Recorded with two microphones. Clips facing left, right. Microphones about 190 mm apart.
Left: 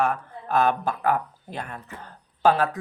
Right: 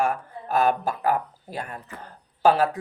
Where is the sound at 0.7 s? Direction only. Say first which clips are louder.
Even; 40° right (ahead or behind).